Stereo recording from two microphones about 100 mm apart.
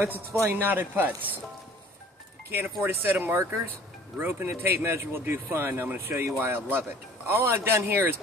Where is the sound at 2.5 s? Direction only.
20° right (ahead or behind).